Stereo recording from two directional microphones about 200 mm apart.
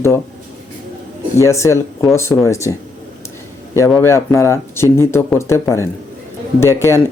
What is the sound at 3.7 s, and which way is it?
Speech, 15° left (ahead or behind).